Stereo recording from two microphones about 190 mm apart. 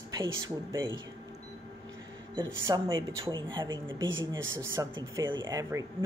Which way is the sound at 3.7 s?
85° right.